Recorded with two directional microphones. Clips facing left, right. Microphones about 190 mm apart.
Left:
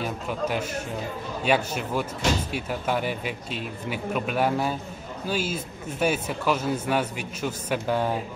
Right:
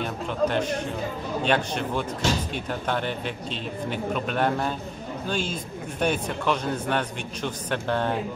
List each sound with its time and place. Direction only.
0.0 s a man's voice: 5° left (ahead or behind)